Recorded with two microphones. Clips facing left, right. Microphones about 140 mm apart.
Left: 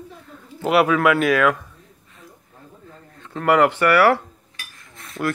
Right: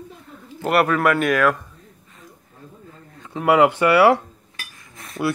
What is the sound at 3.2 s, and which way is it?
Speech, 10° right (ahead or behind).